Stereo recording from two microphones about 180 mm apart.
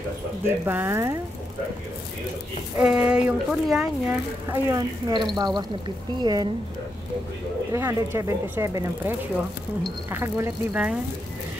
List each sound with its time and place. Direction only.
0.7 s speech: 10° right (ahead or behind)
2.8 s speech: 5° right (ahead or behind); by 6.5 s 25° right (ahead or behind)
7.7 s speech: 15° right (ahead or behind)